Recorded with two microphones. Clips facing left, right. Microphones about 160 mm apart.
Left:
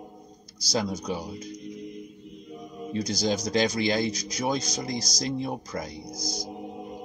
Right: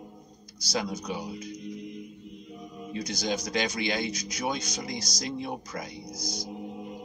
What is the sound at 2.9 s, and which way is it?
A man's voice, 35° left (ahead or behind).